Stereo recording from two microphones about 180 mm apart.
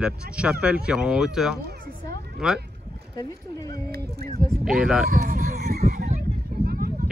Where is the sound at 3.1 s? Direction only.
20° left (ahead or behind).